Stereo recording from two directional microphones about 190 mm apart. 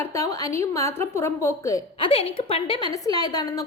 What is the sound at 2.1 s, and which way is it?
A woman's voice, 30° left (ahead or behind).